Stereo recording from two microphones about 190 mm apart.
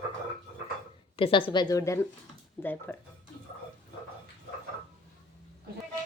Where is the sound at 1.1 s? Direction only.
25° left (ahead or behind); by 3.0 s 10° left (ahead or behind).